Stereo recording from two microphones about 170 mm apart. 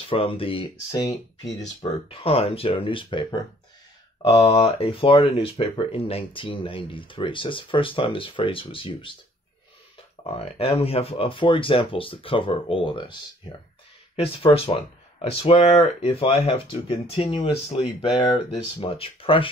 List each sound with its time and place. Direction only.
0.4 s speech: 30° left (ahead or behind)
4.6 s speech: 30° left (ahead or behind)
10.2 s speech: 35° left (ahead or behind)